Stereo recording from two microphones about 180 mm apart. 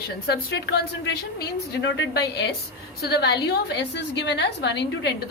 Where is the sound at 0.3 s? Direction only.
70° left (ahead or behind).